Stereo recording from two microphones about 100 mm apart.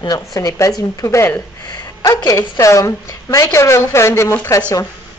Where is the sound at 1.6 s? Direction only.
45° left (ahead or behind).